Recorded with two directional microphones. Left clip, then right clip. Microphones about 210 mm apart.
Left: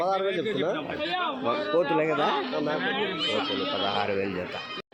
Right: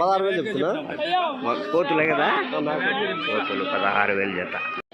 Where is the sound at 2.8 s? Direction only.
20° right (ahead or behind).